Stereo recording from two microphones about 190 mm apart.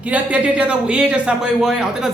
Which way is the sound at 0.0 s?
5° right (ahead or behind).